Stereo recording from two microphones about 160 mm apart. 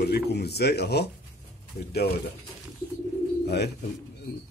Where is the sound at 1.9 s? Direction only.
80° left.